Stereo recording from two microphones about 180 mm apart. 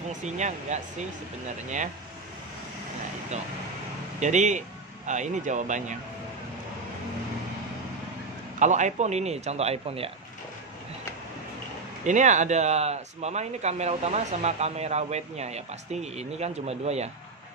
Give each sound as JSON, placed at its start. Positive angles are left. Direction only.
{"t": 0.2, "sound": "speech", "side_deg": -40}
{"t": 4.2, "sound": "speech", "side_deg": -40}
{"t": 8.5, "sound": "speech", "side_deg": -40}
{"t": 12.0, "sound": "speech", "side_deg": -45}